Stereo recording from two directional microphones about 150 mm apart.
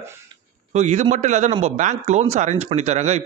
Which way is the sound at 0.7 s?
50° right (ahead or behind).